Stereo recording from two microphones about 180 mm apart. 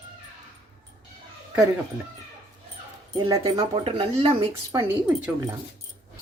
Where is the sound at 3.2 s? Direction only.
20° right (ahead or behind).